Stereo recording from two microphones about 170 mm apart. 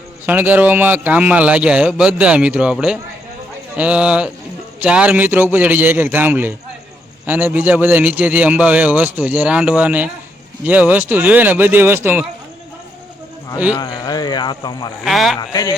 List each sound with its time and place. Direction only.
0.3 s a man's voice: 10° right (ahead or behind)
13.7 s speech: 20° left (ahead or behind)
15.0 s a man's voice: centre (ahead or behind)